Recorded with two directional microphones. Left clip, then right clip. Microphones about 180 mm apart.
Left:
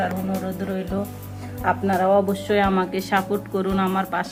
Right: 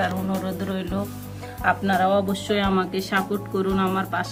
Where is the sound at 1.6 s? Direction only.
30° left (ahead or behind).